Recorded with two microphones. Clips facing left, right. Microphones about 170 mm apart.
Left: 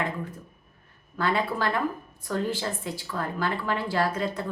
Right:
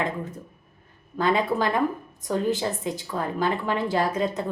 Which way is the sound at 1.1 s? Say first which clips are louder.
Right 4 dB; 20° right (ahead or behind).